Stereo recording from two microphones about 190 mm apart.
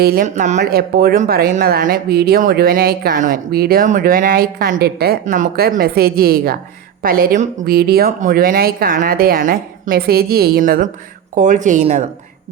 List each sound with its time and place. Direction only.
0.0 s speech: 50° right (ahead or behind)